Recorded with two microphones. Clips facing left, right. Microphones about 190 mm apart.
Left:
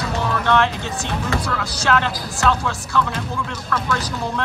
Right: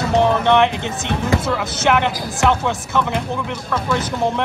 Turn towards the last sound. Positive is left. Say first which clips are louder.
# right 5 dB
turn(degrees=-20)  # may be behind; listen again after turning